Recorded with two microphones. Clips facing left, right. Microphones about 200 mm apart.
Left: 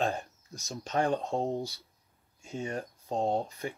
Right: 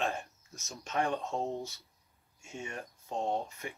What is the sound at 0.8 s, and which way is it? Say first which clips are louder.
Speech: left 4 dB; 35° left (ahead or behind).